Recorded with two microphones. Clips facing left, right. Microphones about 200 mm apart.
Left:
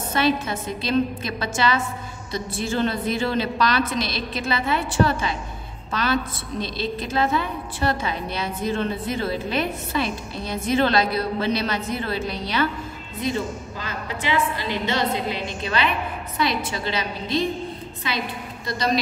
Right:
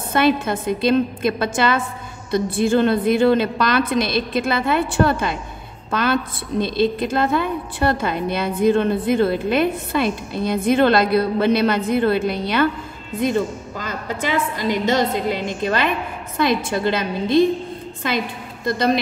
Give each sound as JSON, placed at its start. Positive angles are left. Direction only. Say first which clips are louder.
{"t": 0.1, "sound": "a woman's voice", "louder": "right 5 dB", "side_deg": -55}